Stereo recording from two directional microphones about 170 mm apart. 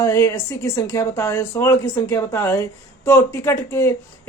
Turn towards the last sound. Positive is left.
turn(degrees=15)  # may be behind; listen again after turning